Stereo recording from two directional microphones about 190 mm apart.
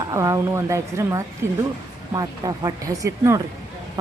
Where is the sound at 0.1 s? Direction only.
15° right (ahead or behind).